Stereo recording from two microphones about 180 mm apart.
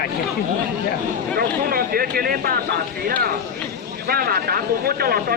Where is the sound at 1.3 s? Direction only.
55° right (ahead or behind).